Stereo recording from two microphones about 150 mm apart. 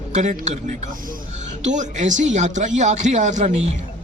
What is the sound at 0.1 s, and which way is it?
Speech, 50° right (ahead or behind).